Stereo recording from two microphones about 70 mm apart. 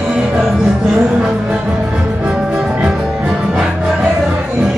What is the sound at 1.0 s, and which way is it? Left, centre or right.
Music, centre.